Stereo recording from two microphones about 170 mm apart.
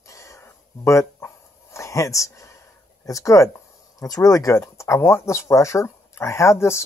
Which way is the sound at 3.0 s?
20° left (ahead or behind).